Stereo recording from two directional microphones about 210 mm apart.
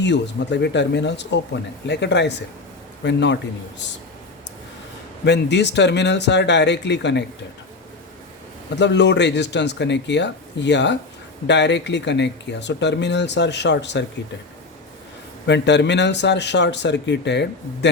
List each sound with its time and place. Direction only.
0.0 s speech: 55° left (ahead or behind)
5.2 s speech: 55° left (ahead or behind)
8.7 s speech: 55° left (ahead or behind)
15.4 s speech: 55° left (ahead or behind)